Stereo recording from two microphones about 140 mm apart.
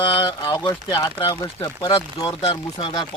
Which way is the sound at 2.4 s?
45° left (ahead or behind).